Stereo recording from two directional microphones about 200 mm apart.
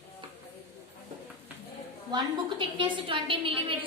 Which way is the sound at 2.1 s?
25° right (ahead or behind).